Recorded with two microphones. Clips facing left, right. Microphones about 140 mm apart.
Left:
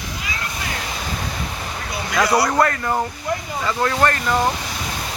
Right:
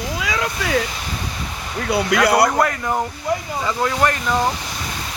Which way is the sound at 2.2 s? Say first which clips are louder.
Right 2 dB; 60° right (ahead or behind).